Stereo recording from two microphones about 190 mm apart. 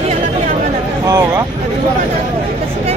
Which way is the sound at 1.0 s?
15° right (ahead or behind).